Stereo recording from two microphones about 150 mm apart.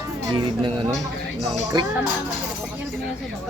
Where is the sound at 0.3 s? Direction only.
30° right (ahead or behind).